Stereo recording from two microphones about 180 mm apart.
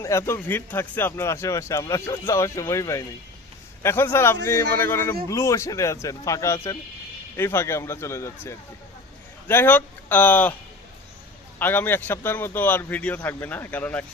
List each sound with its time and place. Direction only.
0.0 s speech: 15° left (ahead or behind)
11.6 s speech: 10° left (ahead or behind)